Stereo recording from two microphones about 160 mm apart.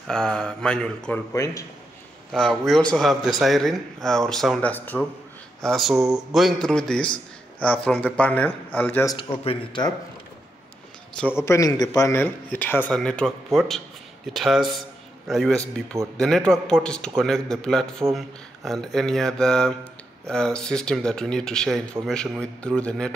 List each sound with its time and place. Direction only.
0.1 s a man's voice: 5° left (ahead or behind)
1.3 s a man's voice: 20° left (ahead or behind)
2.3 s a man's voice: centre (ahead or behind)
9.4 s speech: 35° left (ahead or behind)
11.1 s a man's voice: 15° left (ahead or behind)